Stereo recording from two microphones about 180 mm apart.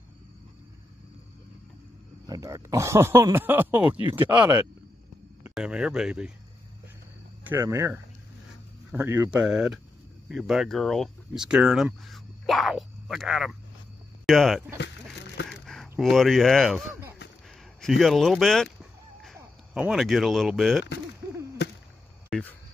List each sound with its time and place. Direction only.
2.2 s speech: 20° right (ahead or behind)
4.2 s speech: 20° right (ahead or behind)
5.5 s speech: 5° right (ahead or behind)
7.4 s speech: 15° right (ahead or behind)
22.3 s a sound: 10° left (ahead or behind)